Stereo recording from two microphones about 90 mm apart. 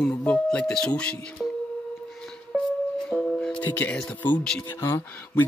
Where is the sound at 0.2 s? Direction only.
10° left (ahead or behind).